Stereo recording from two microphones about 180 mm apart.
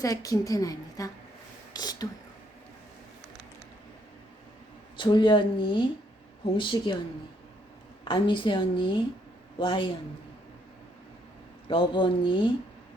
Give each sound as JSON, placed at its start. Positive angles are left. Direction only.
{"t": 0.0, "sound": "a woman's voice", "side_deg": 20}
{"t": 4.9, "sound": "a woman's voice", "side_deg": 25}
{"t": 8.0, "sound": "a woman's voice", "side_deg": 30}
{"t": 11.7, "sound": "a woman's voice", "side_deg": 30}